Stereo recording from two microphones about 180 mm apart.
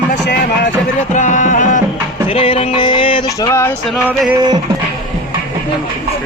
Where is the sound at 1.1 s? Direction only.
45° left (ahead or behind).